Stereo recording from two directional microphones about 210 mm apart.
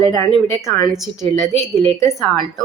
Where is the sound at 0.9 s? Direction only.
Centre (ahead or behind).